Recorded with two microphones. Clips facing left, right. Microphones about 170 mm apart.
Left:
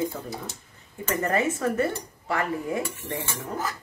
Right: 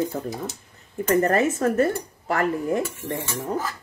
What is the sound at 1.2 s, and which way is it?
Speech, 45° right (ahead or behind).